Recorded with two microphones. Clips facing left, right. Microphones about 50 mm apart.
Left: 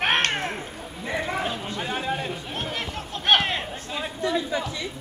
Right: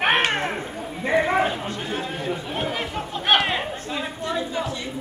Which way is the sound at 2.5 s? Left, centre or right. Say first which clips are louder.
Right 4 dB; centre.